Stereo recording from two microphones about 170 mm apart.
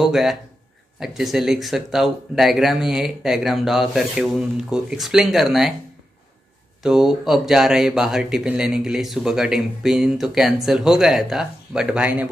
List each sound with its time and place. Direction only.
0.0 s speech: centre (ahead or behind)
6.8 s speech: 5° right (ahead or behind)